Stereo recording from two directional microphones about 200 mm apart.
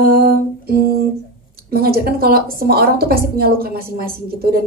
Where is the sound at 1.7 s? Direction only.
50° right (ahead or behind).